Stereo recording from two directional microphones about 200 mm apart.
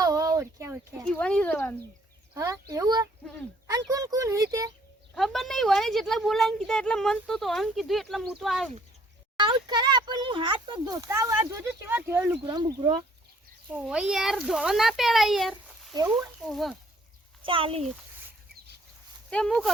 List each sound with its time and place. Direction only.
0.0 s a sound: 20° right (ahead or behind)
1.0 s speech: 5° left (ahead or behind)
2.3 s speech: 15° right (ahead or behind)
5.1 s a woman's voice: centre (ahead or behind)
9.4 s a child's voice: 20° right (ahead or behind)
12.5 s a child's voice: 20° right (ahead or behind)
13.7 s a woman's voice: 5° right (ahead or behind)
17.4 s speech: 25° right (ahead or behind)
19.3 s a woman's voice: 5° left (ahead or behind)